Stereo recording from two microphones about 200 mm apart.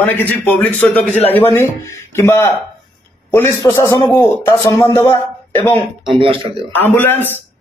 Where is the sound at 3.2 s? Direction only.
10° left (ahead or behind).